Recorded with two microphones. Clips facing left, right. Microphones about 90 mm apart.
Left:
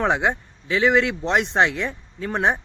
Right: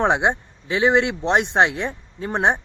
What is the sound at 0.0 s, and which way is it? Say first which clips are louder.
Speech: right 2 dB; 20° right (ahead or behind).